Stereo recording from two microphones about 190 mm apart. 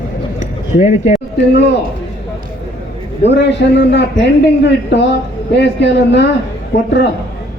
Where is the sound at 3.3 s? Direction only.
65° left (ahead or behind).